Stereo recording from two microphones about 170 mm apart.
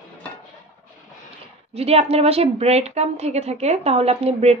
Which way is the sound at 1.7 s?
35° right (ahead or behind).